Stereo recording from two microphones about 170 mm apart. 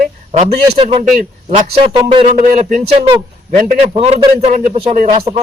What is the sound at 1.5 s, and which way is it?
Speech, 35° right (ahead or behind).